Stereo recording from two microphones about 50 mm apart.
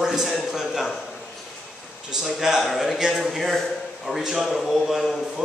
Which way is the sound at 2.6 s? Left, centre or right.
Centre.